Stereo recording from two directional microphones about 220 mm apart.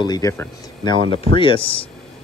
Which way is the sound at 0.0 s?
15° left (ahead or behind).